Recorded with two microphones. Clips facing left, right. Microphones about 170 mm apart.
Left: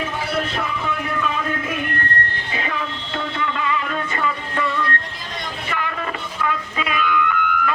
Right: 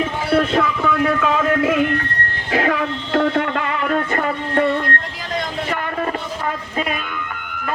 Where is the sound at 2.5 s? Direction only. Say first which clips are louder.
Right 13 dB; 70° right (ahead or behind).